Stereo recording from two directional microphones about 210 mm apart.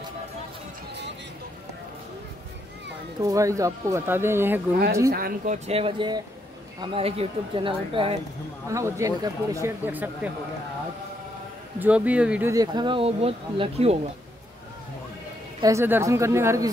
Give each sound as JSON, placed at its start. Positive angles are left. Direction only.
{"t": 3.2, "sound": "speech", "side_deg": -15}
{"t": 5.1, "sound": "speech", "side_deg": -40}
{"t": 8.7, "sound": "speech", "side_deg": -15}
{"t": 11.8, "sound": "speech", "side_deg": -5}
{"t": 15.6, "sound": "speech", "side_deg": -15}